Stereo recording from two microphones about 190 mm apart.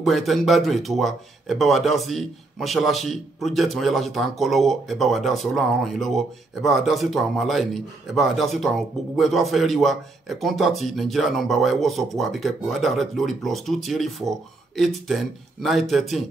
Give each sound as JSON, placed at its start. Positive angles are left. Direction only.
{"t": 0.0, "sound": "speech", "side_deg": 0}